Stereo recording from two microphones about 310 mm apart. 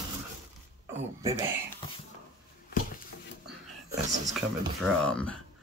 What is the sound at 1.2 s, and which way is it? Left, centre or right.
Speech, centre.